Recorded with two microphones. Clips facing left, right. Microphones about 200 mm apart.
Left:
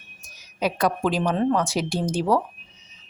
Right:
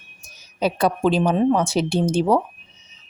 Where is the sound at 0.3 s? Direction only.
30° right (ahead or behind).